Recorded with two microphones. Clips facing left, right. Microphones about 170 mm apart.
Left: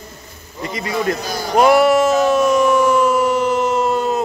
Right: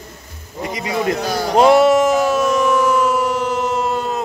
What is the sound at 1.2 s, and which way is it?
Speech, 70° right (ahead or behind).